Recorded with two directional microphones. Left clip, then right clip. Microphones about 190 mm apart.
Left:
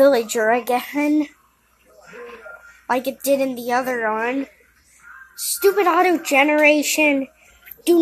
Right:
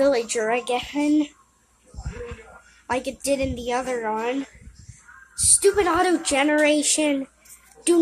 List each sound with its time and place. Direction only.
0.0 s a woman's voice: 15° left (ahead or behind)
2.9 s a woman's voice: 15° left (ahead or behind)